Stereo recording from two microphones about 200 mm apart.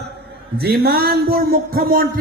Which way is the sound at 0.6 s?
50° right (ahead or behind).